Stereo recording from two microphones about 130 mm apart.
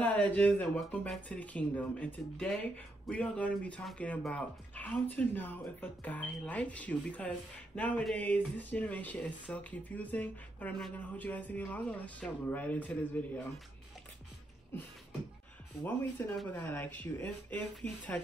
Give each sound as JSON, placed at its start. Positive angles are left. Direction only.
{"t": 0.0, "sound": "speech", "side_deg": 15}
{"t": 14.7, "sound": "speech", "side_deg": 20}